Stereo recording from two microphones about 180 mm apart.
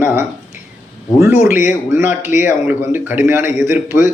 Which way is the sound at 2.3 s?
45° left (ahead or behind).